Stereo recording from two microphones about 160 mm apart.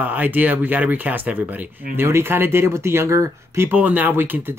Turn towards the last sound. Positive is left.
turn(degrees=-10)  # may be behind; listen again after turning